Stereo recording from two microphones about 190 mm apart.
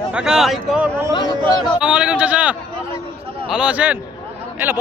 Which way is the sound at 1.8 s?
5° right (ahead or behind).